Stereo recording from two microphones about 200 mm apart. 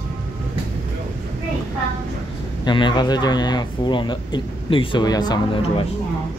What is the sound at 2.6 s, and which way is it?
Speech, 20° left (ahead or behind).